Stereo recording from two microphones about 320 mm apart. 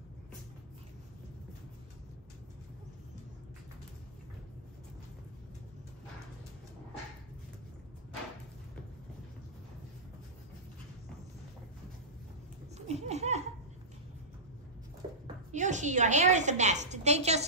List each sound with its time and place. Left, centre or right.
12.7 s laughter: centre
15.5 s a woman's voice: right